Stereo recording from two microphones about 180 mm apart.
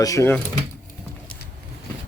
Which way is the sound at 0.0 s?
15° left (ahead or behind).